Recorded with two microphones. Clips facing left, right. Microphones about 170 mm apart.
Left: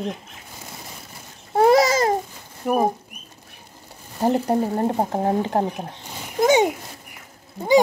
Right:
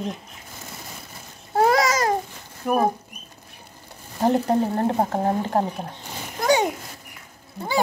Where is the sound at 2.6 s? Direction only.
15° left (ahead or behind).